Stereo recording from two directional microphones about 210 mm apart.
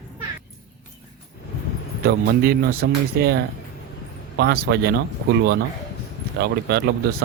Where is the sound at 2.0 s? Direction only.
45° right (ahead or behind).